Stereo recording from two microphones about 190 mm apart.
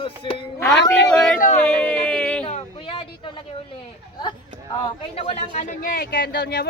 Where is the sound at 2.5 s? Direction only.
25° left (ahead or behind).